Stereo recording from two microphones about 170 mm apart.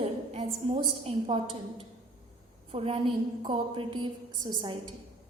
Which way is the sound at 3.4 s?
30° right (ahead or behind).